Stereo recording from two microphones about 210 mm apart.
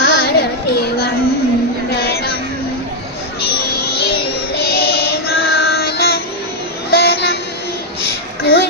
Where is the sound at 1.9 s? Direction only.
50° left (ahead or behind).